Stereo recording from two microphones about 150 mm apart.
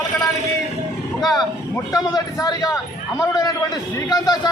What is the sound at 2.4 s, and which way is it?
A man's voice, 25° left (ahead or behind).